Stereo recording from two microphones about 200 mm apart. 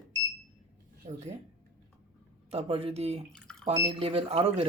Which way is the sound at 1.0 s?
30° right (ahead or behind).